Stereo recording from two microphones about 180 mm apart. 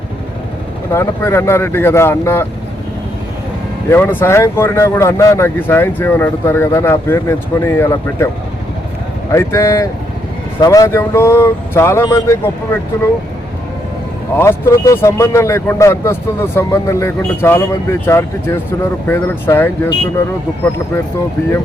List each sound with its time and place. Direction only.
0.9 s speech: 15° left (ahead or behind)
3.8 s speech: 10° left (ahead or behind)
9.3 s speech: 15° left (ahead or behind)
14.3 s speech: 15° left (ahead or behind)